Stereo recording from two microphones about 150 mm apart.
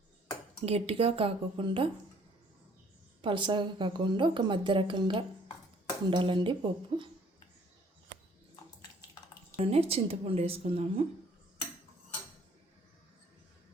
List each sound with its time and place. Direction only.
0.6 s a woman's voice: 40° right (ahead or behind)
3.2 s a woman's voice: 30° right (ahead or behind)
9.6 s a woman's voice: 40° right (ahead or behind)